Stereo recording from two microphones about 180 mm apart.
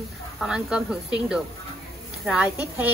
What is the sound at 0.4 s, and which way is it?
A woman's voice, 5° right (ahead or behind).